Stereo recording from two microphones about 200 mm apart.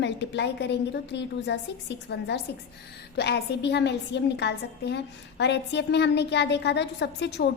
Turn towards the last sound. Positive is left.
turn(degrees=60)  # may be behind; listen again after turning